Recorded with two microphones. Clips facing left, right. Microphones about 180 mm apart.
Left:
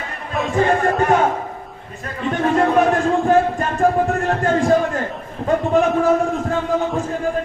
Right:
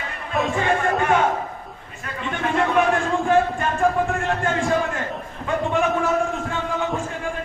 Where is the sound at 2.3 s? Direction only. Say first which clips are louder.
Left 4 dB; 40° left (ahead or behind).